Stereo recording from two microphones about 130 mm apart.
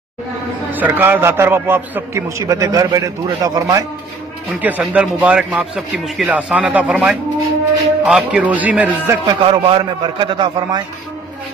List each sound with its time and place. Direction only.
0.7 s a man's voice: 15° right (ahead or behind)
4.6 s a man's voice: 10° right (ahead or behind)
9.1 s a man's voice: 30° right (ahead or behind)
9.4 s a man's voice: 40° right (ahead or behind)